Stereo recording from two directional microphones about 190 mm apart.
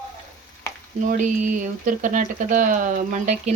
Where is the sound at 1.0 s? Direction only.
45° right (ahead or behind).